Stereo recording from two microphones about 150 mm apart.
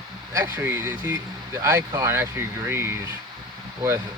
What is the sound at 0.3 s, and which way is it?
Speech, 15° right (ahead or behind).